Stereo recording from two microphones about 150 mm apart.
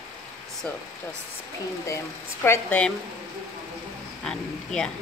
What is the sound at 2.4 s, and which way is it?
Speech, 15° left (ahead or behind).